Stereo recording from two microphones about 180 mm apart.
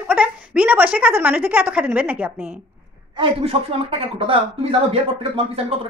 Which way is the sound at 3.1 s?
30° right (ahead or behind).